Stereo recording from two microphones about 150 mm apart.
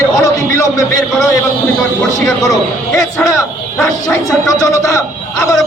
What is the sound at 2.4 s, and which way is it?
Speech, 20° left (ahead or behind).